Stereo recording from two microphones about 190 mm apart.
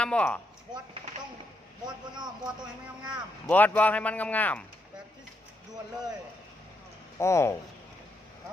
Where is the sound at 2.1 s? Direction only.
20° right (ahead or behind).